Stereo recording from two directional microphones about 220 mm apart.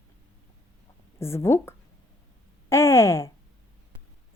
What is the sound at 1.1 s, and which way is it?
Speech, 10° left (ahead or behind).